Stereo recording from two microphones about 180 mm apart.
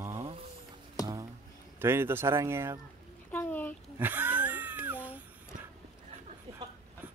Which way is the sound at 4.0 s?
10° right (ahead or behind).